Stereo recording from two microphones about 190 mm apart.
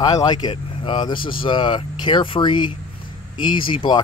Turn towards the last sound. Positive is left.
turn(degrees=25)  # may be behind; listen again after turning